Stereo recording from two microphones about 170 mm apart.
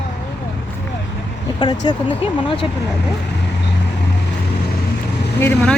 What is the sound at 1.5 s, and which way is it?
Speech, 25° left (ahead or behind).